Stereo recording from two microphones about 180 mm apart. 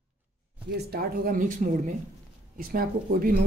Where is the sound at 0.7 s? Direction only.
60° right (ahead or behind).